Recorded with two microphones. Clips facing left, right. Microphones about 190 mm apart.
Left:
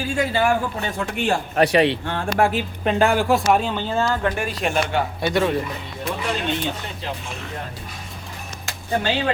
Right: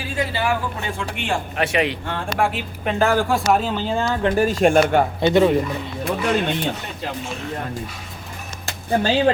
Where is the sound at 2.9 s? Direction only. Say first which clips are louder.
Even; 15° left (ahead or behind).